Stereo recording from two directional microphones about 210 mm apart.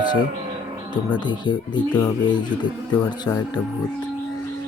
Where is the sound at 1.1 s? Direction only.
20° left (ahead or behind).